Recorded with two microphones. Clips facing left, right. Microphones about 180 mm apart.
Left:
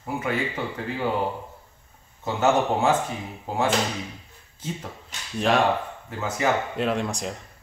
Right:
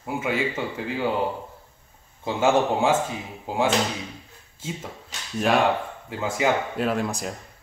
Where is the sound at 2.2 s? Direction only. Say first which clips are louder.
Right 1 dB; 10° right (ahead or behind).